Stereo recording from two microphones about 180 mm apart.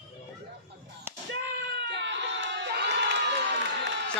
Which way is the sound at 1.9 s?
80° right.